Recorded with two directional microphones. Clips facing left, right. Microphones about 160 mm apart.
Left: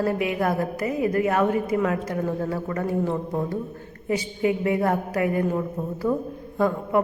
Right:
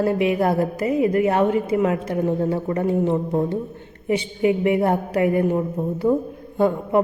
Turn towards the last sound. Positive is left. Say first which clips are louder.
# right 3 dB
turn(degrees=-25)  # may be behind; listen again after turning